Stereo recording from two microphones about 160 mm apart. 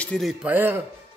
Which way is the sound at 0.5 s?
10° right (ahead or behind).